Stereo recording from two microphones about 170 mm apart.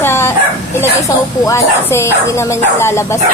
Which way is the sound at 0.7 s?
20° left (ahead or behind).